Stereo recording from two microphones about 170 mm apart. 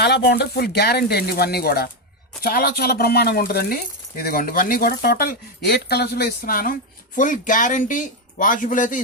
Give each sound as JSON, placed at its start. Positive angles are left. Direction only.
{"t": 0.0, "sound": "a man's voice", "side_deg": 75}